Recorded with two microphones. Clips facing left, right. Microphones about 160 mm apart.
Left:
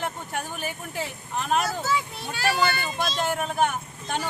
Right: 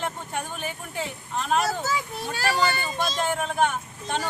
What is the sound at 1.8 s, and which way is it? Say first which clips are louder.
A child's voice: left 1 dB; 40° right (ahead or behind).